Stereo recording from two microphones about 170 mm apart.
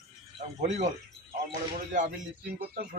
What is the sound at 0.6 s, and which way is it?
Speech, 45° right (ahead or behind).